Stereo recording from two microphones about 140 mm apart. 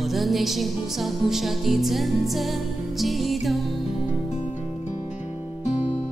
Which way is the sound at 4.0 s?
50° left (ahead or behind).